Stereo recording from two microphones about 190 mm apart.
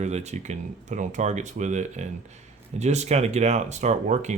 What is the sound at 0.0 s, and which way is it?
Speech, 35° right (ahead or behind).